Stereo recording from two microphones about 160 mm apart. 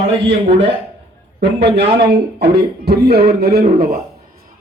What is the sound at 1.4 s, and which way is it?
A man's voice, 90° right.